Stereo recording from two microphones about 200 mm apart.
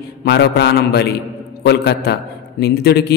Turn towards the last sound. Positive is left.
turn(degrees=55)  # may be behind; listen again after turning